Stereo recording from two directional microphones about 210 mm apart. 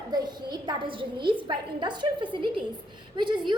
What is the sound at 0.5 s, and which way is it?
A woman's voice, 20° right (ahead or behind).